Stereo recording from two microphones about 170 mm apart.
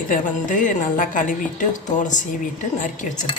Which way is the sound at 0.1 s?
50° left (ahead or behind).